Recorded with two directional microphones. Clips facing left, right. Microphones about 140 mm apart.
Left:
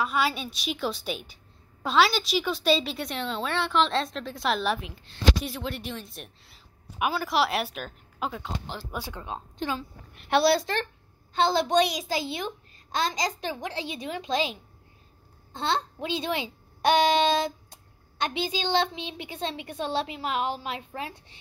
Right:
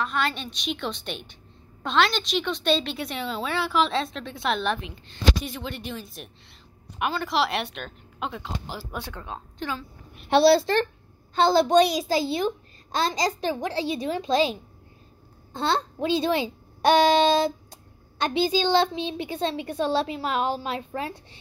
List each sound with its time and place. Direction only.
0.0 s a woman's voice: 5° left (ahead or behind)
9.1 s a woman's voice: 15° left (ahead or behind)
10.3 s a child's voice: 30° right (ahead or behind)